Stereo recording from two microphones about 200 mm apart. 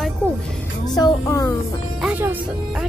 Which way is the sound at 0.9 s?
20° left (ahead or behind).